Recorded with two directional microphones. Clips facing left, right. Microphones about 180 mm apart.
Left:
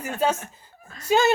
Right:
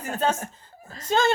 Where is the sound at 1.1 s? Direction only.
10° left (ahead or behind).